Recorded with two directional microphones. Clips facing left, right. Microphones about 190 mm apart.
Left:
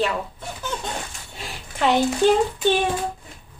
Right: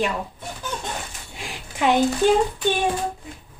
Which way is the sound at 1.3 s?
15° right (ahead or behind).